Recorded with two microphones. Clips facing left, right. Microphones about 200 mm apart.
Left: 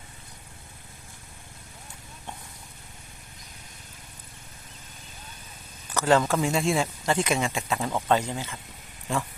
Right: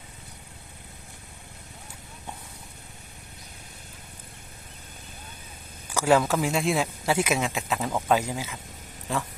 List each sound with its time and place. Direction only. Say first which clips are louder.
5.9 s speech: right 1 dB; 10° right (ahead or behind)